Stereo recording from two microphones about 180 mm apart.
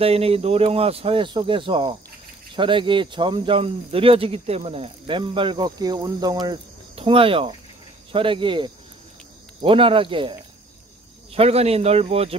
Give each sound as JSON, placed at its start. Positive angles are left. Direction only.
{"t": 0.0, "sound": "speech", "side_deg": -35}